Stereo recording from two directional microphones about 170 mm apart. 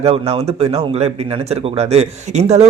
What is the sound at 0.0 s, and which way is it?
Speech, 35° right (ahead or behind).